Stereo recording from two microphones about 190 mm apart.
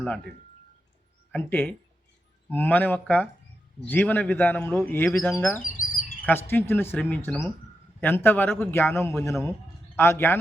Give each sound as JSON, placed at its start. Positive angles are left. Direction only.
{"t": 1.3, "sound": "speech", "side_deg": 10}
{"t": 5.6, "sound": "chirp", "side_deg": 45}
{"t": 6.2, "sound": "speech", "side_deg": 10}